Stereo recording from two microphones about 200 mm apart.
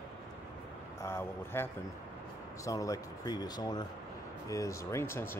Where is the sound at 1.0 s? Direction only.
10° left (ahead or behind).